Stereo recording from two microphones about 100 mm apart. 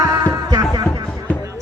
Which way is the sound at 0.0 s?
40° right (ahead or behind).